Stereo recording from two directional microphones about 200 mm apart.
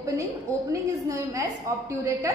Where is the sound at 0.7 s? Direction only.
15° right (ahead or behind).